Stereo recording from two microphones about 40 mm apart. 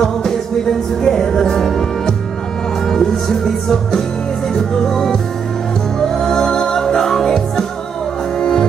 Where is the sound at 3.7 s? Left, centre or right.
Centre.